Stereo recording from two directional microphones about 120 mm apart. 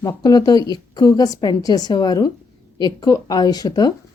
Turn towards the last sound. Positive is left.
turn(degrees=35)  # may be behind; listen again after turning